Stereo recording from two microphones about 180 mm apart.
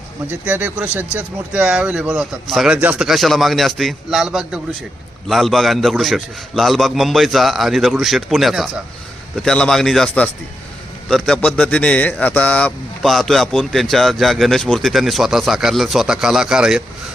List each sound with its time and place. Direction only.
0.3 s speech: 10° right (ahead or behind)